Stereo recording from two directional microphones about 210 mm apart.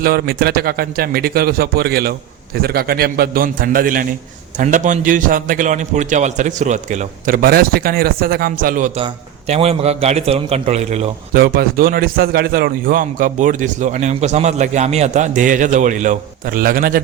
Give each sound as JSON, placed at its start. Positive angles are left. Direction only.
{"t": 0.0, "sound": "a man's voice", "side_deg": -45}
{"t": 9.5, "sound": "a man's voice", "side_deg": -30}
{"t": 11.3, "sound": "a man's voice", "side_deg": -45}